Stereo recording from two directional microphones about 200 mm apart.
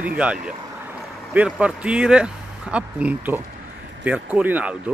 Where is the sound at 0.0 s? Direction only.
5° right (ahead or behind).